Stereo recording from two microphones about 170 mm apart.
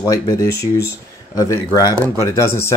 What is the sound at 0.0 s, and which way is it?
Speech, 20° left (ahead or behind).